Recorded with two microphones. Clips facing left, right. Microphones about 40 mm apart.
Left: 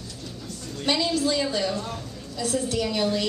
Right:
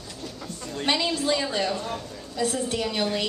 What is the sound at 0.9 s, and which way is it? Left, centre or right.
A woman's voice, right.